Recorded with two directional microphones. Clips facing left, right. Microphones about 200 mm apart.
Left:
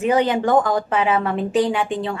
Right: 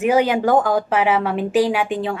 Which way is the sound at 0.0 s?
10° right (ahead or behind).